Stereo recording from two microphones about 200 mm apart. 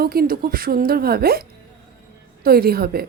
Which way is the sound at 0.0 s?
50° right (ahead or behind).